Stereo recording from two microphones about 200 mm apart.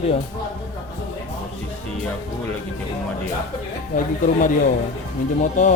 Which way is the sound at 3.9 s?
40° left (ahead or behind).